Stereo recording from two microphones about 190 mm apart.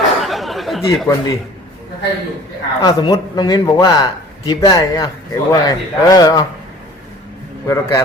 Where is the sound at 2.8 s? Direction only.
20° left (ahead or behind).